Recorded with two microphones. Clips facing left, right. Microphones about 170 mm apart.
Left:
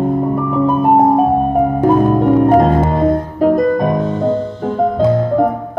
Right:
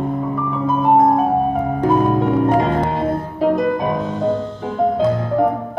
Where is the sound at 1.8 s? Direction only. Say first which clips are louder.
Left 3 dB; 40° left (ahead or behind).